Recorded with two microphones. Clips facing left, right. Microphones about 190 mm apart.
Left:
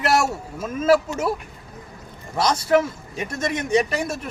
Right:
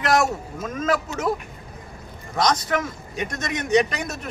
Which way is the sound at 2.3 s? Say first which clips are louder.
Even; 10° left (ahead or behind).